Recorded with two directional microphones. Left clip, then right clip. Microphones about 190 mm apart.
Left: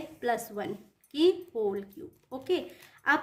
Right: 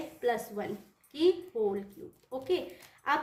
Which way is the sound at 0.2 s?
40° left (ahead or behind).